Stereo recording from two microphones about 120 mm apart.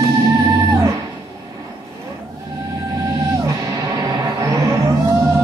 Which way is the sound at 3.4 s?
30° right (ahead or behind).